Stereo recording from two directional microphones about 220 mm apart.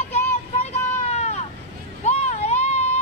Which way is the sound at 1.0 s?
30° left (ahead or behind).